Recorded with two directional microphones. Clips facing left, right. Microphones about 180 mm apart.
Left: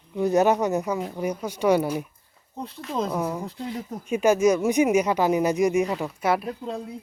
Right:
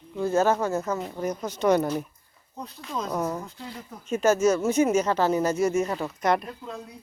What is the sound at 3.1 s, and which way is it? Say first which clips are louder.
Speech: left 1 dB; 10° left (ahead or behind).